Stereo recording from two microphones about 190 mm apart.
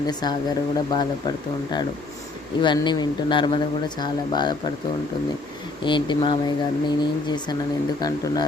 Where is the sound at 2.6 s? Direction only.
25° left (ahead or behind).